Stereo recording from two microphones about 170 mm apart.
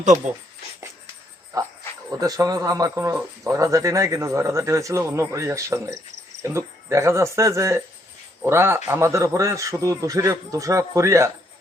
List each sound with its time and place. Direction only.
1.5 s speech: 20° right (ahead or behind)